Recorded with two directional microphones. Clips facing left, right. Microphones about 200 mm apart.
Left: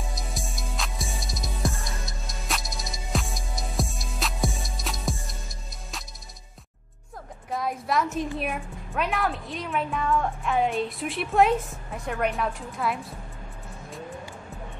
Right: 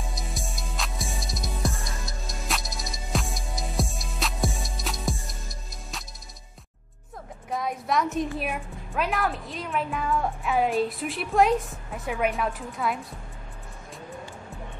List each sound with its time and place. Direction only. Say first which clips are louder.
0.1 s music: even; centre (ahead or behind)
7.5 s a woman's voice: even; centre (ahead or behind)